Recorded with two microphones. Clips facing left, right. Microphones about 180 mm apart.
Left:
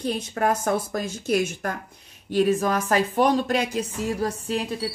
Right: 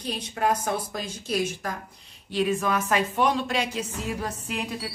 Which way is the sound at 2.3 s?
40° left (ahead or behind).